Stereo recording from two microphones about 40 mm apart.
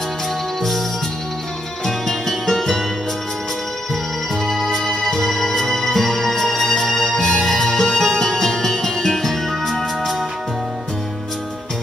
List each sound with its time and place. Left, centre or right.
1.9 s music: centre
4.5 s music: centre